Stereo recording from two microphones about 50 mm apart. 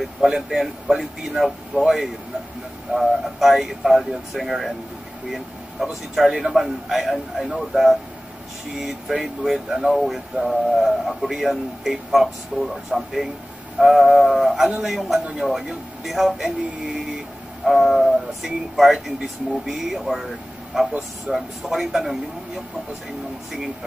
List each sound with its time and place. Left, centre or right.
0.0 s a man's voice: centre
9.9 s a man's voice: centre
23.5 s speech: centre